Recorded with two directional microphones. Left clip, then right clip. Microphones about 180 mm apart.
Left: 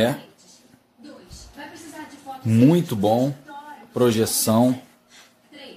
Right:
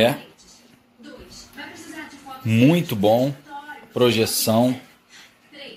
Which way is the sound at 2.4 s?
20° left (ahead or behind).